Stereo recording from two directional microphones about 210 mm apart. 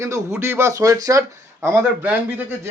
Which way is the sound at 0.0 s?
15° right (ahead or behind).